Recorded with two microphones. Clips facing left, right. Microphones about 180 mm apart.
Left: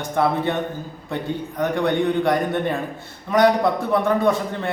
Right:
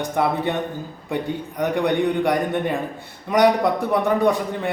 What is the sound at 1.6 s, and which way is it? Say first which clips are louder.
A man's voice: even; 15° right (ahead or behind).